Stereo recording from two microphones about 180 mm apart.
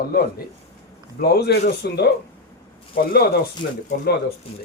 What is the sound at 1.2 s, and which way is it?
Speech, 60° left (ahead or behind).